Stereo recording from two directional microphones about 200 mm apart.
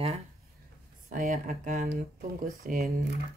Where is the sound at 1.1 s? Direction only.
40° right (ahead or behind).